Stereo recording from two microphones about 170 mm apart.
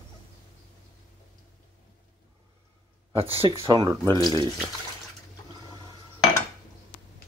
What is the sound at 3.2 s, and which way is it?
Speech, 35° right (ahead or behind).